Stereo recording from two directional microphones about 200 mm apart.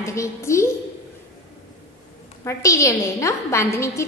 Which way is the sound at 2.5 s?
15° left (ahead or behind).